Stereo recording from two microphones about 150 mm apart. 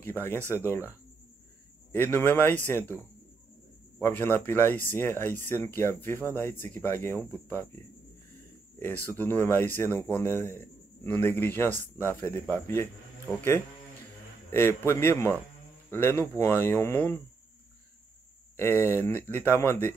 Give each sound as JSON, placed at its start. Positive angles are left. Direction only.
{"t": 0.0, "sound": "a man's voice", "side_deg": 15}
{"t": 2.1, "sound": "a man's voice", "side_deg": 15}
{"t": 14.5, "sound": "a man's voice", "side_deg": 15}
{"t": 18.6, "sound": "a man's voice", "side_deg": 15}